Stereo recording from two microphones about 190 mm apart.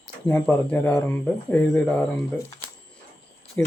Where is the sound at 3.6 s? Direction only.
10° left (ahead or behind).